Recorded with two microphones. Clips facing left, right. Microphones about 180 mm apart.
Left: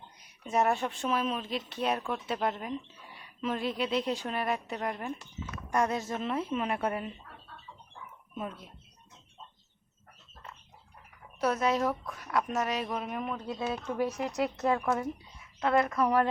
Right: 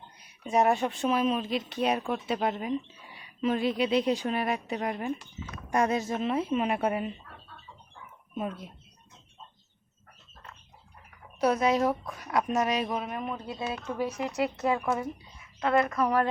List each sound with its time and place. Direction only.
0.4 s speech: 15° right (ahead or behind)
11.3 s speech: 15° right (ahead or behind)